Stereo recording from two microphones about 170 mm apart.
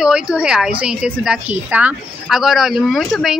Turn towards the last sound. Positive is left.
turn(degrees=0)  # may be behind; listen again after turning